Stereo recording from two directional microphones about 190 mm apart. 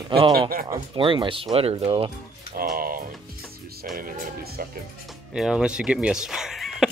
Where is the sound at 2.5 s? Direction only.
50° right (ahead or behind).